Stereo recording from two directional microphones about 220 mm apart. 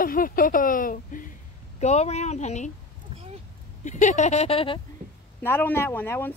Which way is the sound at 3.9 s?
35° left (ahead or behind).